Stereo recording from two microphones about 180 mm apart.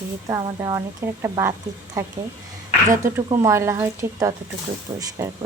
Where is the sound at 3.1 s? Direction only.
15° right (ahead or behind).